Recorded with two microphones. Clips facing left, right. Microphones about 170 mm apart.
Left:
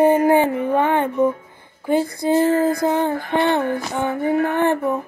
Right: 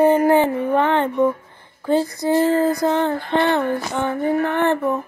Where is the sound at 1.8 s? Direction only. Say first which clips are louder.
Even; 15° left (ahead or behind).